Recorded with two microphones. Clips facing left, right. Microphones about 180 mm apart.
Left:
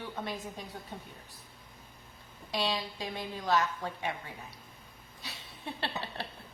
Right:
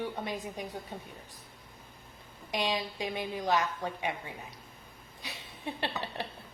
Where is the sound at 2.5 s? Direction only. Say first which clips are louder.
Right 1 dB; 15° right (ahead or behind).